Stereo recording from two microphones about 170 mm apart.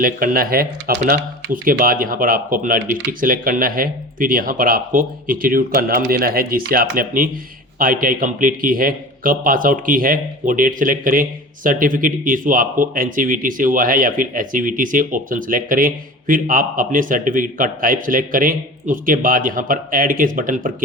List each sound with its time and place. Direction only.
0.0 s a man's voice: 55° right (ahead or behind)